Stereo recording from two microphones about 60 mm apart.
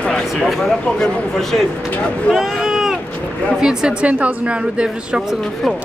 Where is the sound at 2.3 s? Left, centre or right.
Centre.